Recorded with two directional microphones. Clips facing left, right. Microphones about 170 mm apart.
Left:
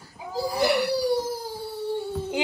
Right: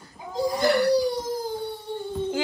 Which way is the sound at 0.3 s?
5° left (ahead or behind).